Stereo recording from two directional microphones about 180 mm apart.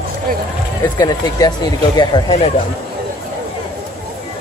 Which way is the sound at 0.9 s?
20° left (ahead or behind).